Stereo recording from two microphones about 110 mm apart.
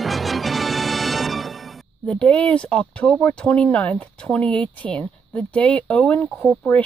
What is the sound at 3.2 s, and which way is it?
Speech, 10° left (ahead or behind).